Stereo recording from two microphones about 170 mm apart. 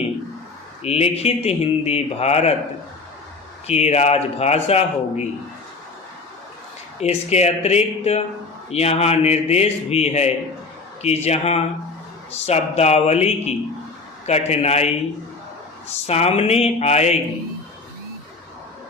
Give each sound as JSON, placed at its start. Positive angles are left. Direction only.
{"t": 0.8, "sound": "speech", "side_deg": 35}
{"t": 3.7, "sound": "speech", "side_deg": 40}
{"t": 7.0, "sound": "speech", "side_deg": 40}
{"t": 16.0, "sound": "speech", "side_deg": 35}